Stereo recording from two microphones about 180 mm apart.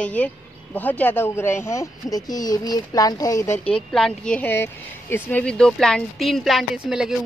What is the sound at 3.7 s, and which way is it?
Speech, centre (ahead or behind).